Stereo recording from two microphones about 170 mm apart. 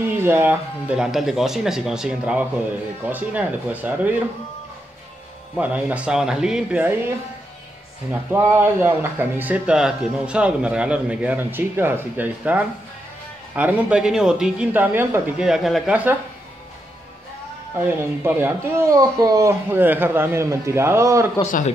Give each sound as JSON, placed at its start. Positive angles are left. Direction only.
{"t": 0.2, "sound": "speech", "side_deg": -15}
{"t": 5.6, "sound": "speech", "side_deg": -10}
{"t": 8.1, "sound": "speech", "side_deg": -15}
{"t": 17.7, "sound": "speech", "side_deg": -15}
{"t": 21.4, "sound": "speech", "side_deg": 45}